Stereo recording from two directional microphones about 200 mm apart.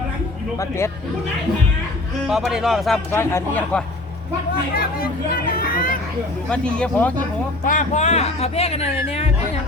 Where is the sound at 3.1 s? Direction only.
10° left (ahead or behind).